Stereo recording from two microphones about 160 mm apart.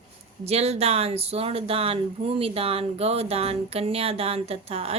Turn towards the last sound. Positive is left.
turn(degrees=-40)  # may be behind; listen again after turning